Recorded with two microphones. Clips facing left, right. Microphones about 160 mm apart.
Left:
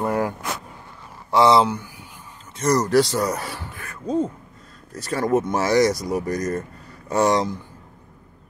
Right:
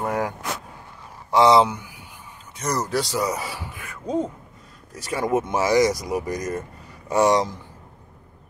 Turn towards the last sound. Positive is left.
turn(degrees=-15)  # may be behind; listen again after turning